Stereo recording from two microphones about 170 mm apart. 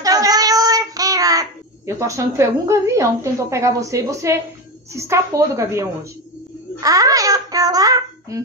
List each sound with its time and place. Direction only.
0.0 s child singing: 20° right (ahead or behind)
4.9 s a woman's voice: 15° right (ahead or behind)
6.8 s a sound: 20° right (ahead or behind)